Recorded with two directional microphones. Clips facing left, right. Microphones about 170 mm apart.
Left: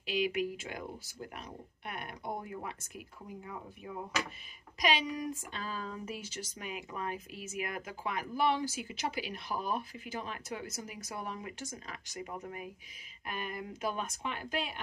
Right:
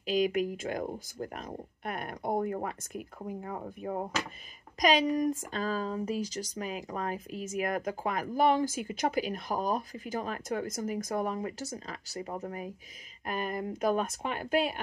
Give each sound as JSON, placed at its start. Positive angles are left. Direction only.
{"t": 0.0, "sound": "speech", "side_deg": -40}